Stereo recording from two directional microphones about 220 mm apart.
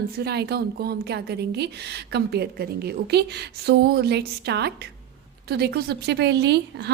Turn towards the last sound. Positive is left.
turn(degrees=-50)  # may be behind; listen again after turning